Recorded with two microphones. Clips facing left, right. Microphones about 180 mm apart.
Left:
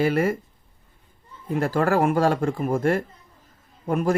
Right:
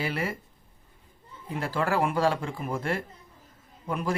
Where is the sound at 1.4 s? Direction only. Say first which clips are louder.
Left 7 dB; 45° left (ahead or behind).